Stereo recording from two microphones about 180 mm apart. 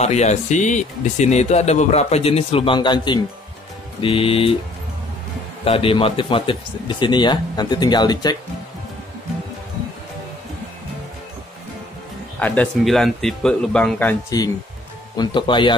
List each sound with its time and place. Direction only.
0.0 s speech: 40° left (ahead or behind)
5.7 s speech: 30° left (ahead or behind)
12.4 s speech: 10° left (ahead or behind)
14.3 s speech: 20° left (ahead or behind)